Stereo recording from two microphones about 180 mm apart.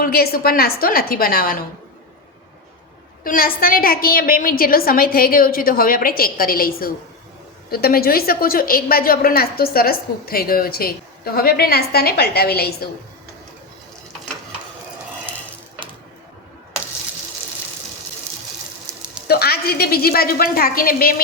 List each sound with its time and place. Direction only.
0.0 s a woman's voice: 60° left (ahead or behind)
3.2 s a woman's voice: 55° left (ahead or behind)
18.9 s a sound: 15° right (ahead or behind)
19.3 s a woman's voice: 60° left (ahead or behind)